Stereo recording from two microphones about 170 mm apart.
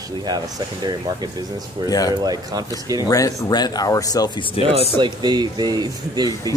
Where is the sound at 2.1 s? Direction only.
20° right (ahead or behind).